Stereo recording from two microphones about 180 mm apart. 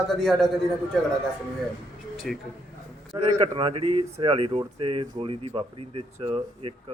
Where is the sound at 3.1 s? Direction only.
30° right (ahead or behind).